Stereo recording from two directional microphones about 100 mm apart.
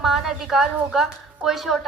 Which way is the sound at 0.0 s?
5° right (ahead or behind).